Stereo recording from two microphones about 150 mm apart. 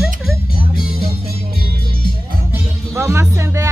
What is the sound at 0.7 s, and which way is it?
Music, 80° left.